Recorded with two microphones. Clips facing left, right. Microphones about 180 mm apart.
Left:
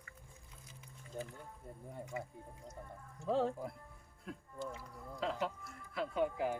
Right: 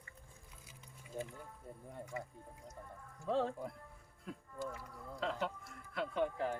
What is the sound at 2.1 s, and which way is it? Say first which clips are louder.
Speech: left 1 dB; 20° left (ahead or behind).